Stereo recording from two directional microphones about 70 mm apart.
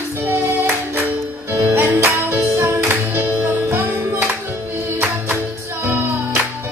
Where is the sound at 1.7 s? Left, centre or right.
Right.